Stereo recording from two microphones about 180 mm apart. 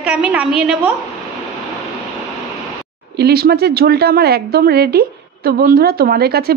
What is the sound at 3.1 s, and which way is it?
A woman's voice, 60° right (ahead or behind).